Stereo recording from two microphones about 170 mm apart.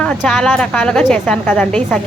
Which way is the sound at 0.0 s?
5° left (ahead or behind).